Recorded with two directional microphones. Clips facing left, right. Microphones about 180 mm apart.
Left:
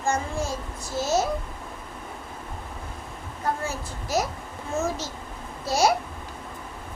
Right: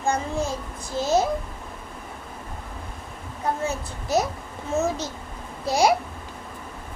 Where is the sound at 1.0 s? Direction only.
15° right (ahead or behind).